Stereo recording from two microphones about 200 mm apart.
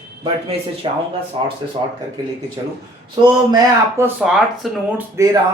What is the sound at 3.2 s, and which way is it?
Speech, 20° right (ahead or behind).